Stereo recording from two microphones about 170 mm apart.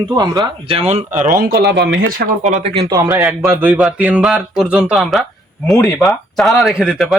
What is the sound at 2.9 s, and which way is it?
Speech, 15° right (ahead or behind).